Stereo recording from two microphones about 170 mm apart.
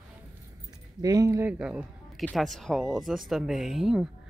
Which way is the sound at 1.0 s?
20° right (ahead or behind).